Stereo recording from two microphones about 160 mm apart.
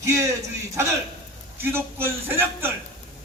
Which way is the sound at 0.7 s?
20° right (ahead or behind).